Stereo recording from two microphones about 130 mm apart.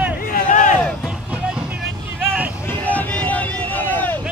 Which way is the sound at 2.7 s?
10° left (ahead or behind).